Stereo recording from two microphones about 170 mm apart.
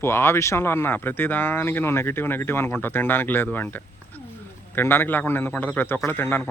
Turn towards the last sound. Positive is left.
turn(degrees=10)  # may be behind; listen again after turning